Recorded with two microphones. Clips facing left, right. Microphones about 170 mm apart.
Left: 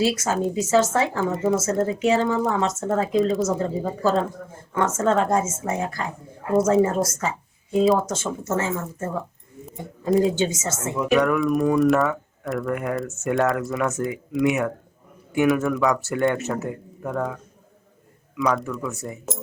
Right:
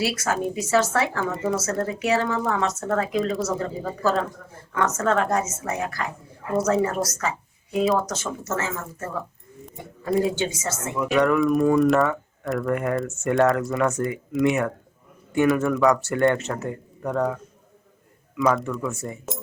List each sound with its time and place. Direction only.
0.0 s speech: 20° left (ahead or behind)
10.1 s speech: centre (ahead or behind)
10.6 s speech: 25° left (ahead or behind)
11.1 s speech: centre (ahead or behind)
18.3 s speech: centre (ahead or behind)